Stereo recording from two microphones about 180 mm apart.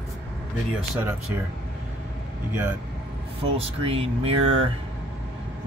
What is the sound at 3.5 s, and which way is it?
Speech, 30° right (ahead or behind).